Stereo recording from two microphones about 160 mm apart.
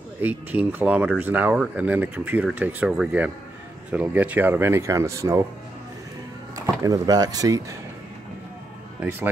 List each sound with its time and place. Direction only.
0.2 s speech: 10° right (ahead or behind)
6.5 s speech: 20° right (ahead or behind)